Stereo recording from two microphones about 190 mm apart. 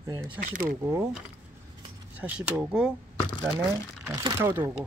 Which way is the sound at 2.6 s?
5° right (ahead or behind).